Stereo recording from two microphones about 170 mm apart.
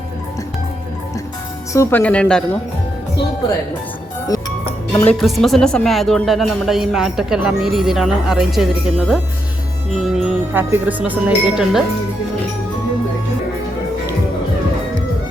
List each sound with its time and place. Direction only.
1.7 s speech: 15° left (ahead or behind)
4.3 s music: 20° left (ahead or behind)
5.2 s speech: centre (ahead or behind)